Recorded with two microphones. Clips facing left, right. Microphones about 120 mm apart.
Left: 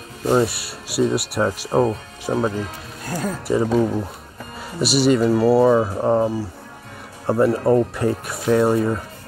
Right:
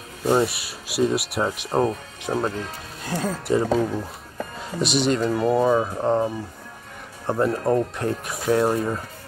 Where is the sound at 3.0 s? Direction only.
25° right (ahead or behind).